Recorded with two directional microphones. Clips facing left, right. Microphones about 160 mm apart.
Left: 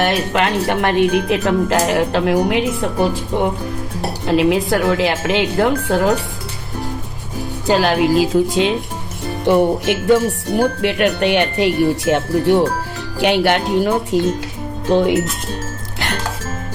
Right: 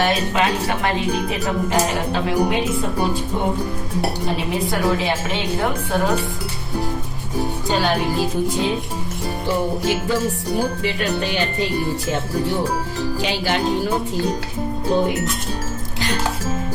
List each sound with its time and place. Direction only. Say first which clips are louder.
0.0 s speech: left 2 dB; 60° left (ahead or behind); by 6.1 s 85° left
7.7 s speech: left 7 dB; 90° left
9.5 s speech: left 7 dB; 65° left (ahead or behind)
14.8 s speech: left 5 dB; 90° left